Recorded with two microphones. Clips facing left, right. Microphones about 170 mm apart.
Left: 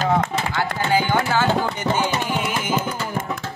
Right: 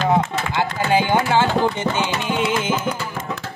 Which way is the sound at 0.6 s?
25° right (ahead or behind).